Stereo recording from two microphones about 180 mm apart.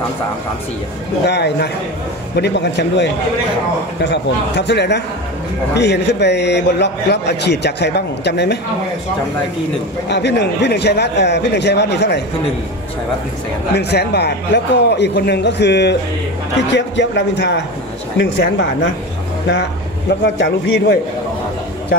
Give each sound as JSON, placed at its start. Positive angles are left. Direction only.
{"t": 1.2, "sound": "a man's voice", "side_deg": 70}
{"t": 10.0, "sound": "a man's voice", "side_deg": 70}
{"t": 13.7, "sound": "a man's voice", "side_deg": 65}
{"t": 20.3, "sound": "a man's voice", "side_deg": 85}